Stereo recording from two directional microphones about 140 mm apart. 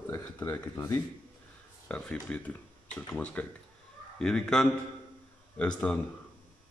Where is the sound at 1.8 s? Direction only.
5° left (ahead or behind).